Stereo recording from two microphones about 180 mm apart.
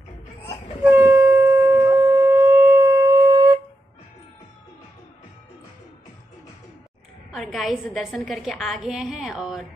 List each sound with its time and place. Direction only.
1.0 s shofar: 15° right (ahead or behind)
7.4 s a woman's voice: centre (ahead or behind)